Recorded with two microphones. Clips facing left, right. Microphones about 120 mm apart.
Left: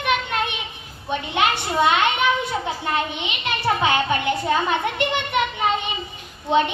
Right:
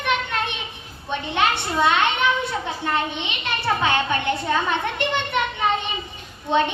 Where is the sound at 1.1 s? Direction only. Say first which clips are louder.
Left 1 dB; 15° left (ahead or behind).